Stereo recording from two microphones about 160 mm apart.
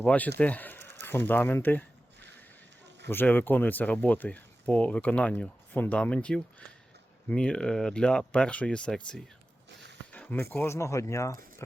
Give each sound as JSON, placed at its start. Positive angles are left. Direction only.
{"t": 0.0, "sound": "speech", "side_deg": 10}
{"t": 3.1, "sound": "speech", "side_deg": 10}
{"t": 10.1, "sound": "a sound", "side_deg": 10}
{"t": 10.5, "sound": "speech", "side_deg": 15}